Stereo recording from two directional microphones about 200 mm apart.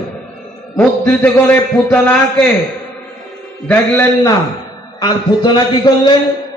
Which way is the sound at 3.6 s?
15° left (ahead or behind).